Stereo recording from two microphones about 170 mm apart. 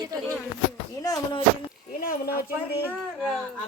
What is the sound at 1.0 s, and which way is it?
Speech, 20° left (ahead or behind).